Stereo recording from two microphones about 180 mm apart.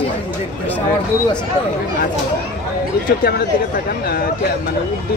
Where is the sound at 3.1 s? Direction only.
60° left (ahead or behind).